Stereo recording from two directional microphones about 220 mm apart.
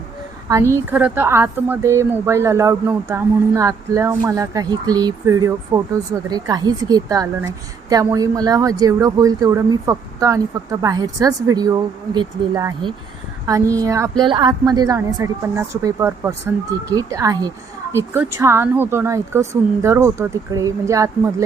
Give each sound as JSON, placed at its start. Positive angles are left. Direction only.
{"t": 0.4, "sound": "a woman's voice", "side_deg": -15}